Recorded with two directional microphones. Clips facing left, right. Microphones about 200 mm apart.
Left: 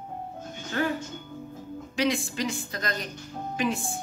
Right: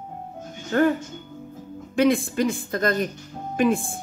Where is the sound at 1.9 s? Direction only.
55° right (ahead or behind).